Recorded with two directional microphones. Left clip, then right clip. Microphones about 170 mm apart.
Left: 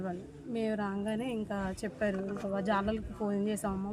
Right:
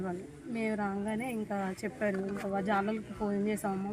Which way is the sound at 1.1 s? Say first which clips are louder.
Even; 25° left (ahead or behind).